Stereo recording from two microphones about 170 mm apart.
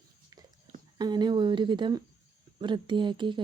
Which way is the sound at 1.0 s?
25° right (ahead or behind).